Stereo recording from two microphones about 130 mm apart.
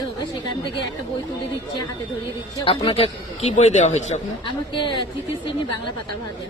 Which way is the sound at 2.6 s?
45° left (ahead or behind).